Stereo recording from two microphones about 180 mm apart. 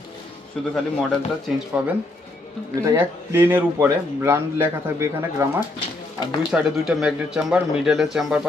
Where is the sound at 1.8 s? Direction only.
5° right (ahead or behind).